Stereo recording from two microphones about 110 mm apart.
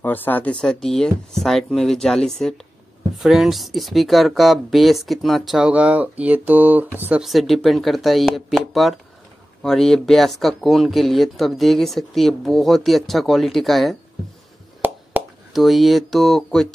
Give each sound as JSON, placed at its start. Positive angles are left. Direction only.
{"t": 0.0, "sound": "speech", "side_deg": 15}
{"t": 5.7, "sound": "speech", "side_deg": -10}
{"t": 7.2, "sound": "speech", "side_deg": 0}
{"t": 15.2, "sound": "a sound", "side_deg": -15}
{"t": 15.5, "sound": "speech", "side_deg": 0}